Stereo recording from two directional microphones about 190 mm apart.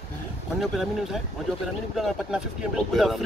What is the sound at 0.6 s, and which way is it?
Speech, centre (ahead or behind).